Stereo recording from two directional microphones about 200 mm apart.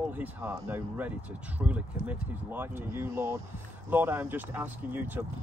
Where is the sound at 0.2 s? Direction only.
10° right (ahead or behind).